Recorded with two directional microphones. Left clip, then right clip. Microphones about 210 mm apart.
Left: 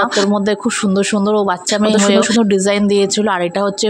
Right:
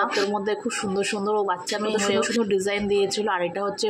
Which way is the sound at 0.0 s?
45° left (ahead or behind).